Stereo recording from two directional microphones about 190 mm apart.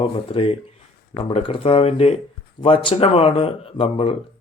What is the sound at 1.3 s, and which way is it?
Mantra, 30° left (ahead or behind).